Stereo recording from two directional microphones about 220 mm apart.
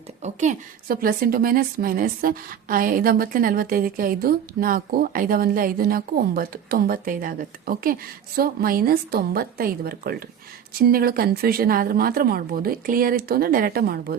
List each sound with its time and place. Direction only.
0.2 s a woman's voice: 35° right (ahead or behind)